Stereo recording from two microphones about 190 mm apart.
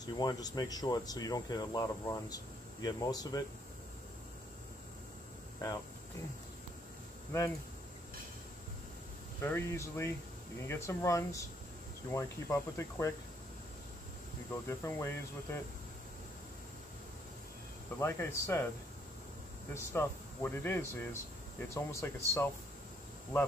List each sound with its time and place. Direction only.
0.0 s speech: 20° left (ahead or behind)
7.3 s speech: 15° left (ahead or behind)
9.4 s speech: 15° left (ahead or behind)
14.7 s speech: 10° left (ahead or behind)
17.9 s speech: 15° left (ahead or behind)
19.7 s speech: 10° left (ahead or behind)